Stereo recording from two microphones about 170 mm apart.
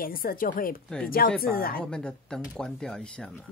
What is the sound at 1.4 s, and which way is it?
Speech, 60° left (ahead or behind).